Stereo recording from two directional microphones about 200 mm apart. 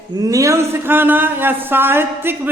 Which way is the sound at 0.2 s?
15° right (ahead or behind).